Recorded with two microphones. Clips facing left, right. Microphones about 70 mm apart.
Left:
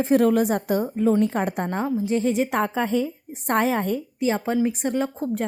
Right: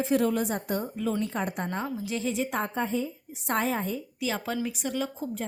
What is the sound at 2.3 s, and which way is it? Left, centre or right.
Speech, left.